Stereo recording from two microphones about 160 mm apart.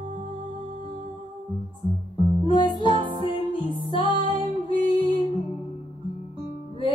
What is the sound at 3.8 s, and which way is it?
Music, 30° left (ahead or behind).